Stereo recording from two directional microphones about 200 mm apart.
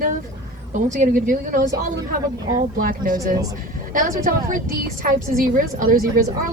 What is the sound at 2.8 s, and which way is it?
A woman's voice, 45° right (ahead or behind).